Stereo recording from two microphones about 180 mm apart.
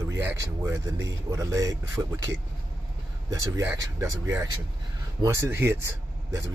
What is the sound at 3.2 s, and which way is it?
Speech, 20° right (ahead or behind).